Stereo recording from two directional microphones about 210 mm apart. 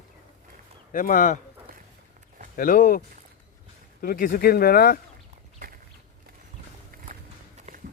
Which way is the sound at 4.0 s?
45° left (ahead or behind).